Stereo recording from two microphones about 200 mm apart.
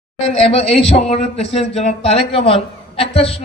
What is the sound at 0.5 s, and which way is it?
A man's voice, 30° left (ahead or behind).